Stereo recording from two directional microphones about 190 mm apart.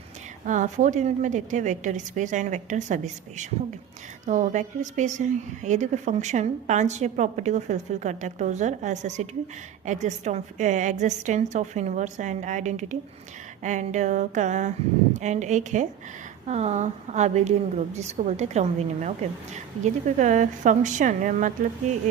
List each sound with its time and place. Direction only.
0.4 s a woman's voice: 40° right (ahead or behind)